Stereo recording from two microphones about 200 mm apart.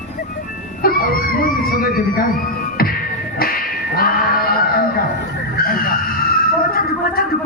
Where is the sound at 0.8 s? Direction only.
45° left (ahead or behind).